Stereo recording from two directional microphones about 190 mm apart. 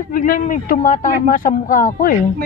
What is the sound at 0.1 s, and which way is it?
Speech, 45° left (ahead or behind).